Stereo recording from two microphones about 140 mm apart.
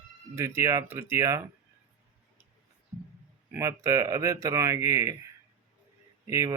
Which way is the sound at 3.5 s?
20° right (ahead or behind).